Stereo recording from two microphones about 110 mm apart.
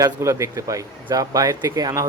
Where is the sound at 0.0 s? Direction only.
30° right (ahead or behind).